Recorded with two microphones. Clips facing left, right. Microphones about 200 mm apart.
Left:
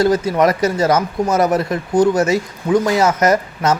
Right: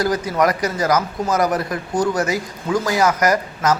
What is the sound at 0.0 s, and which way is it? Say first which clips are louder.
A man's voice: left 4 dB; 25° left (ahead or behind).